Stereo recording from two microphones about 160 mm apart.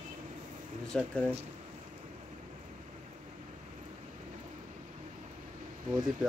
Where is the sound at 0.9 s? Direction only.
5° left (ahead or behind).